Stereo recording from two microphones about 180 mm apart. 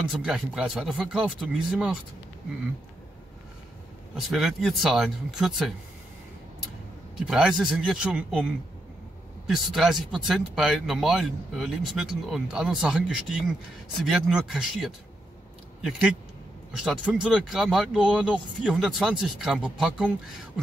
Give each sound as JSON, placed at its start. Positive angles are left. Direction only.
{"t": 0.1, "sound": "speech", "side_deg": -5}
{"t": 4.1, "sound": "speech", "side_deg": 0}
{"t": 7.2, "sound": "speech", "side_deg": -5}
{"t": 9.7, "sound": "speech", "side_deg": 0}
{"t": 16.8, "sound": "speech", "side_deg": -5}